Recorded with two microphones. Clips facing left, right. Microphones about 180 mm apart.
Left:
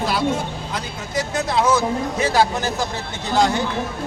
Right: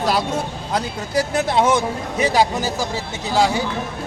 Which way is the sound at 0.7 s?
30° right (ahead or behind).